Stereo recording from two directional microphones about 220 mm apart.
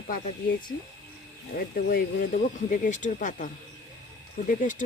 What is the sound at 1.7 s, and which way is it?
Speech, 40° left (ahead or behind).